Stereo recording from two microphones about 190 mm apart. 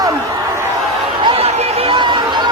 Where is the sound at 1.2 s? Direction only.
30° right (ahead or behind).